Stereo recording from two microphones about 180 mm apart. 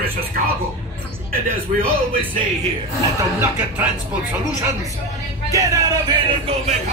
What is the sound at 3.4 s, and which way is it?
Speech, 10° right (ahead or behind).